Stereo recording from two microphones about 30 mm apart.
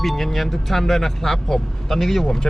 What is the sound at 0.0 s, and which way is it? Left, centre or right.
Speech, centre.